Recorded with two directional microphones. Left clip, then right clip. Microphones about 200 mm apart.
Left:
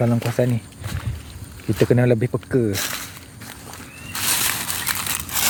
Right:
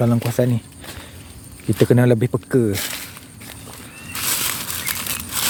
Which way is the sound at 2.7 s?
Centre (ahead or behind).